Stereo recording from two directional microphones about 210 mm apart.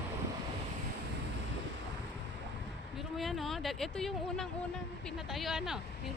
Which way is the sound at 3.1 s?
Centre (ahead or behind).